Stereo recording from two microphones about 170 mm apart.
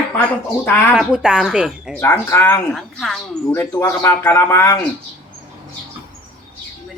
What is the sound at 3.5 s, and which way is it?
Speech, 15° left (ahead or behind).